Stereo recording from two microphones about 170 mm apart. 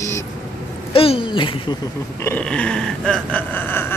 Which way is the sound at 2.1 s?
10° left (ahead or behind).